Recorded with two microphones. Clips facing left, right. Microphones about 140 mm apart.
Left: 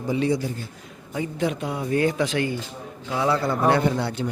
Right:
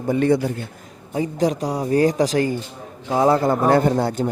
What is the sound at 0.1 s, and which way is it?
Speech, 55° right (ahead or behind).